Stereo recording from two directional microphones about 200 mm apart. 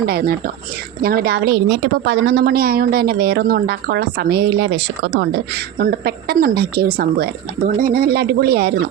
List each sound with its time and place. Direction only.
0.0 s a woman's voice: 50° right (ahead or behind)